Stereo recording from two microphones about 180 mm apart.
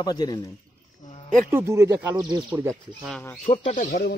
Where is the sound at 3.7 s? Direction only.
45° left (ahead or behind).